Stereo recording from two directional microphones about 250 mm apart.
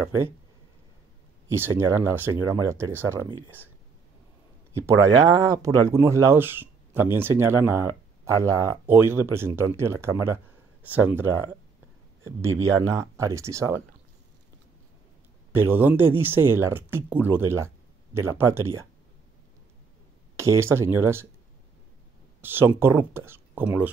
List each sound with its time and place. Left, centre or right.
1.5 s speech: centre
4.7 s speech: centre
15.5 s speech: centre
20.3 s speech: centre
22.4 s speech: centre